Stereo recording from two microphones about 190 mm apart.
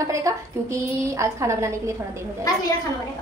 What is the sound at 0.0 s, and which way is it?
A woman's voice, 15° right (ahead or behind).